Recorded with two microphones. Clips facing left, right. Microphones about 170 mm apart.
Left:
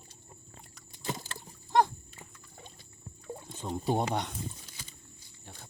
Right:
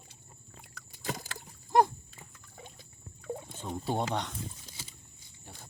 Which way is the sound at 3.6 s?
15° left (ahead or behind).